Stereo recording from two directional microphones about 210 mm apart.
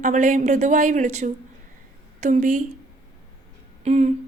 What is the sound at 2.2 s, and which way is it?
Speech, 35° right (ahead or behind).